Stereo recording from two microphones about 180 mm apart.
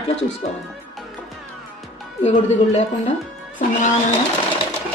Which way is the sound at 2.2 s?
40° left (ahead or behind).